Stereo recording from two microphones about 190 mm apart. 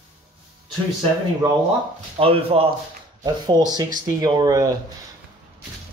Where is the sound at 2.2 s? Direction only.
30° right (ahead or behind).